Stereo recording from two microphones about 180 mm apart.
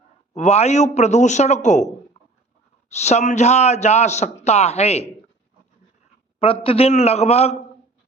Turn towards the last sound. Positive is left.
turn(degrees=35)  # may be behind; listen again after turning